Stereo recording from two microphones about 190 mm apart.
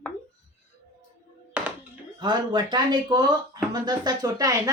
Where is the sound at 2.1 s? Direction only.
25° right (ahead or behind).